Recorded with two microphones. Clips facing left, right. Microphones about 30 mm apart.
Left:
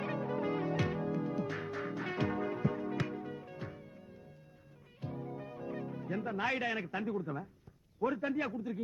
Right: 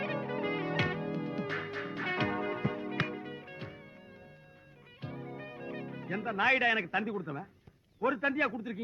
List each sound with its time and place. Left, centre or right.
0.0 s music: right
4.9 s music: right
6.2 s a man's voice: right